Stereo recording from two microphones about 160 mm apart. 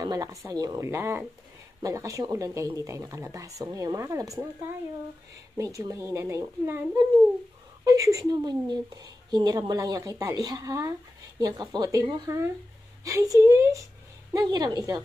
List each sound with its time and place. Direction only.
0.0 s a woman's voice: 20° right (ahead or behind)
5.6 s a woman's voice: 20° right (ahead or behind)
7.8 s a woman's voice: 20° right (ahead or behind)